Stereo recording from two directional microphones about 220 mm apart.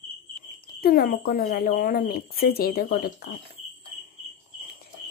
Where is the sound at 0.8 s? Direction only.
45° left (ahead or behind).